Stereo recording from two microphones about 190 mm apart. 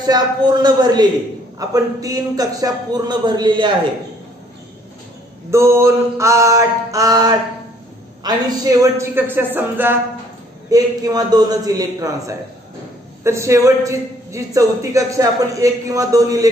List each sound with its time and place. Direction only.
0.0 s a man's voice: 20° right (ahead or behind)
5.5 s a man's voice: 15° right (ahead or behind)